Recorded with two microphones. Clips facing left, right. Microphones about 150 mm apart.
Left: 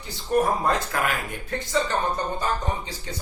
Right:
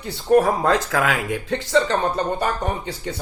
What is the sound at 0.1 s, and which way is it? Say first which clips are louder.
Speech: right 6 dB; 75° right (ahead or behind).